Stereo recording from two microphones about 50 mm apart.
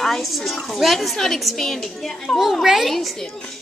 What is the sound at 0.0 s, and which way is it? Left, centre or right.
A woman's voice, centre.